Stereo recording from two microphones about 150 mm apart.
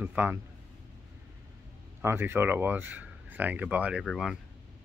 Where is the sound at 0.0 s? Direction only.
10° right (ahead or behind).